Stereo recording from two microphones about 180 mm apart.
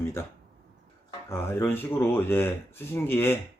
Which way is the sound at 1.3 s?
15° left (ahead or behind).